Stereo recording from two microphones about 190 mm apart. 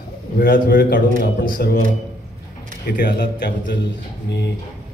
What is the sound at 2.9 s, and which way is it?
Speech, 55° left (ahead or behind).